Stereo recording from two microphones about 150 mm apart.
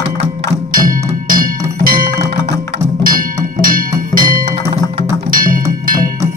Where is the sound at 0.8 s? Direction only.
70° right (ahead or behind).